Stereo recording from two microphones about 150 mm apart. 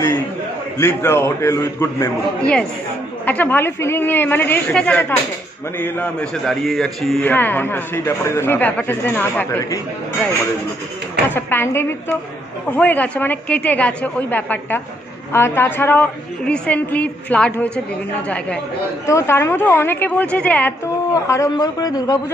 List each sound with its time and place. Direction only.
0.7 s a man's voice: 15° left (ahead or behind)
11.3 s speech: 15° left (ahead or behind)
21.1 s a man's voice: 20° left (ahead or behind)